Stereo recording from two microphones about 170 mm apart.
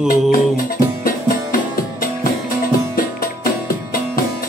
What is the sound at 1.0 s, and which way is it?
Music, 60° left (ahead or behind).